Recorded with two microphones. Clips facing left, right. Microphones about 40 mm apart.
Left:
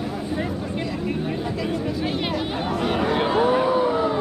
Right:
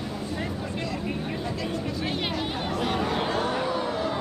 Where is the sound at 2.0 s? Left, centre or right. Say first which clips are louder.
Left 4 dB; centre.